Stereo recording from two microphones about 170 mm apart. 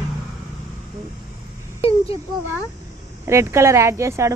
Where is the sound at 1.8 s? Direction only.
35° left (ahead or behind).